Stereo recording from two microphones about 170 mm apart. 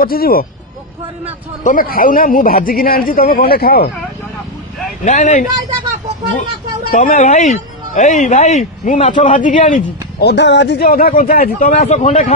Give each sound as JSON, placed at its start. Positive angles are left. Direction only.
{"t": 0.0, "sound": "speech", "side_deg": 60}
{"t": 1.6, "sound": "speech", "side_deg": 50}
{"t": 5.0, "sound": "speech", "side_deg": 45}
{"t": 6.9, "sound": "speech", "side_deg": 50}
{"t": 10.2, "sound": "speech", "side_deg": 90}